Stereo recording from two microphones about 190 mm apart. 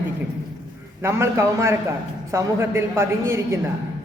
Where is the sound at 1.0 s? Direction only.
15° right (ahead or behind).